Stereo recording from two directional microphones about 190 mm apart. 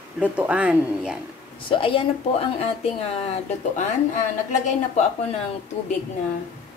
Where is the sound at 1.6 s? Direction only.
30° left (ahead or behind).